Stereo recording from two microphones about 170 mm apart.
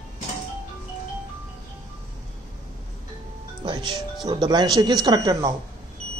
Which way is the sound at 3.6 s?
30° right (ahead or behind).